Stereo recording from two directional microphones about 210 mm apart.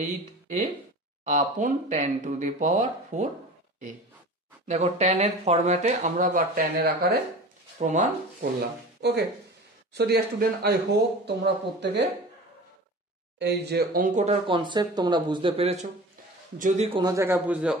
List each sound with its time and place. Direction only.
0.0 s speech: 35° right (ahead or behind)
4.6 s speech: 30° right (ahead or behind)
7.8 s speech: 35° right (ahead or behind)
9.0 s speech: 55° right (ahead or behind)
13.4 s speech: 50° right (ahead or behind)
14.4 s speech: 25° right (ahead or behind)
17.0 s a man's voice: 15° right (ahead or behind)